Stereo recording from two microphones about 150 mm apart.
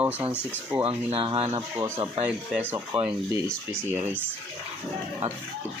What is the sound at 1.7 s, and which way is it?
Speech, 20° right (ahead or behind).